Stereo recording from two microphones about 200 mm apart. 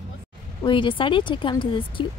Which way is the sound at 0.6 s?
25° left (ahead or behind).